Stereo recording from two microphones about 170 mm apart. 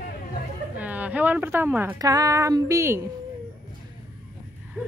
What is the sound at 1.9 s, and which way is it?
Speech, 20° right (ahead or behind).